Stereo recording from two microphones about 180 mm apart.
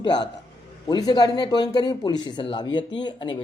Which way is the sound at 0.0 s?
25° left (ahead or behind).